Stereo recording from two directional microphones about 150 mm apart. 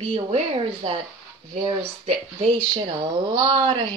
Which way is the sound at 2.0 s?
35° right (ahead or behind).